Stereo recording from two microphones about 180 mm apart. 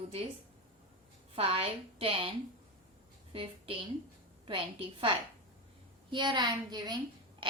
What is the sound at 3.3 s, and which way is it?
A woman's voice, 30° right (ahead or behind).